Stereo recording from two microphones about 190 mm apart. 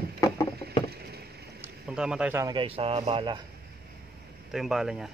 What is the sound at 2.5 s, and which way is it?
Speech, 30° right (ahead or behind).